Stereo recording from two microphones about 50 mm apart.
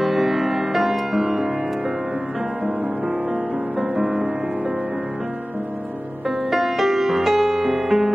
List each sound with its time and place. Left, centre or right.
0.0 s music: centre
3.7 s music: right
6.5 s music: centre